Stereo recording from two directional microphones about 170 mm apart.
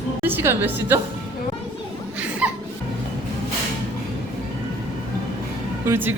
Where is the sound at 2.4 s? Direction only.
5° right (ahead or behind).